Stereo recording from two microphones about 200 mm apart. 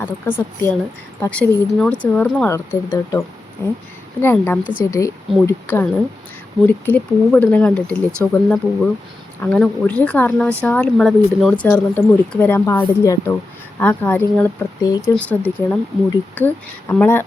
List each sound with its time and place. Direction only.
0.0 s speech: 10° left (ahead or behind)